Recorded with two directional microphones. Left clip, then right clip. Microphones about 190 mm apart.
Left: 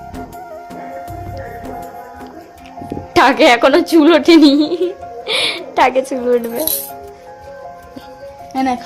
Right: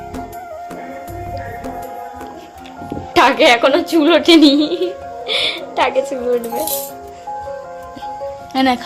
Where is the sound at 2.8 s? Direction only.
20° left (ahead or behind).